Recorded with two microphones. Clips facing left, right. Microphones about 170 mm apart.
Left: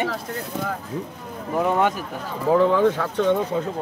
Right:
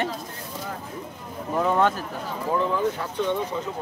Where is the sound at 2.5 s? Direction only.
75° left (ahead or behind).